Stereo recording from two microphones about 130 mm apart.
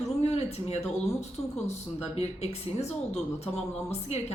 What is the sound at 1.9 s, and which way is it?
Speech, 55° left (ahead or behind).